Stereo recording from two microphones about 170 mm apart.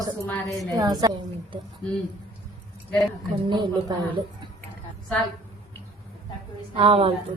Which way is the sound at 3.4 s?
25° right (ahead or behind).